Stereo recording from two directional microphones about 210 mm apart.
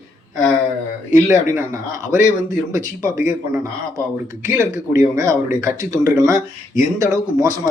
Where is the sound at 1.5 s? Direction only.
15° right (ahead or behind).